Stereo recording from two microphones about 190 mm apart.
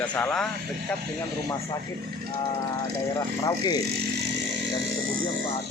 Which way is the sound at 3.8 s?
60° right (ahead or behind).